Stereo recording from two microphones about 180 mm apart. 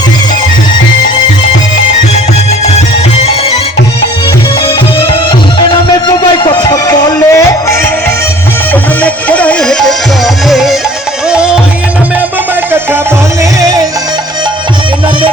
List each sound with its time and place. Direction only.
6.1 s music: 25° left (ahead or behind)
8.7 s music: 10° left (ahead or behind)